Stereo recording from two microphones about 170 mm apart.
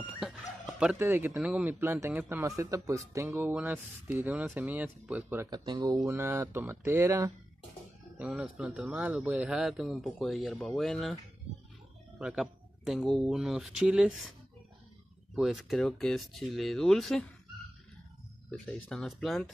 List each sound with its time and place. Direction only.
0.0 s dog: centre (ahead or behind)
1.0 s a man's voice: 15° right (ahead or behind)
8.2 s speech: 5° right (ahead or behind)
12.2 s speech: 5° right (ahead or behind)
15.3 s speech: centre (ahead or behind)
18.5 s speech: 5° left (ahead or behind)